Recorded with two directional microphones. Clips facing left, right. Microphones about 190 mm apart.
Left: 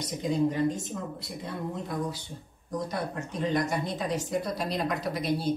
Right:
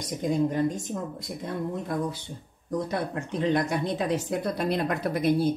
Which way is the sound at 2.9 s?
60° right (ahead or behind).